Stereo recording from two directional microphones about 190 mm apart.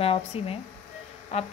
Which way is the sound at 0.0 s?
35° left (ahead or behind).